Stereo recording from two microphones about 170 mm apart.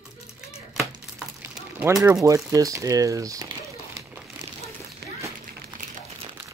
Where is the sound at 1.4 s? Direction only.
10° right (ahead or behind).